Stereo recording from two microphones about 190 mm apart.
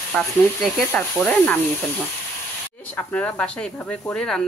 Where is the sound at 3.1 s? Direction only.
10° left (ahead or behind).